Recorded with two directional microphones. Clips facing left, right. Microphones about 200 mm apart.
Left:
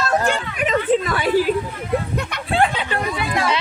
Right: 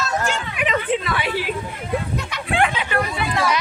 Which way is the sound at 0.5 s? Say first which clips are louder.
Left 4 dB; 40° left (ahead or behind).